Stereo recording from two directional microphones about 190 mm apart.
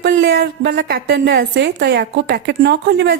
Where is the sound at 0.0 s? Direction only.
70° right (ahead or behind).